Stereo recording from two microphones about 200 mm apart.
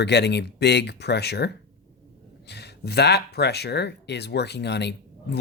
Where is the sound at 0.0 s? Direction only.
55° left (ahead or behind).